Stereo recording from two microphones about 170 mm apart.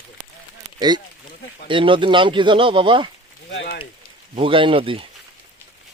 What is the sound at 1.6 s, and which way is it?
Speech, 30° right (ahead or behind).